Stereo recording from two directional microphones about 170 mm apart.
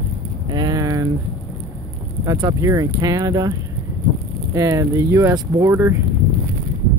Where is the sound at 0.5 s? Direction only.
25° right (ahead or behind).